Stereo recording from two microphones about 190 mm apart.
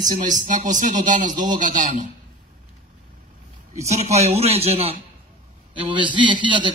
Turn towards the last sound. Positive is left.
turn(degrees=-25)  # may be behind; listen again after turning